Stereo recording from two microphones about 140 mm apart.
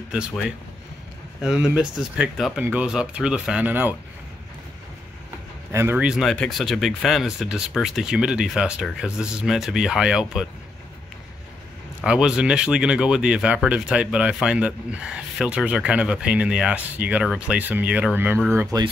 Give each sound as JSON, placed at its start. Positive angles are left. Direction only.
{"t": 0.1, "sound": "speech", "side_deg": -5}
{"t": 5.7, "sound": "a man's voice", "side_deg": -20}
{"t": 5.9, "sound": "speech", "side_deg": -5}
{"t": 12.0, "sound": "speech", "side_deg": -5}